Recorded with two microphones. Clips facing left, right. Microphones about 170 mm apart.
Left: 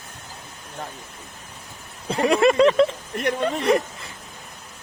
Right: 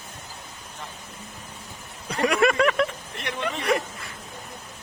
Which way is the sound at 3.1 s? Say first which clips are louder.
Left 8 dB; 45° left (ahead or behind).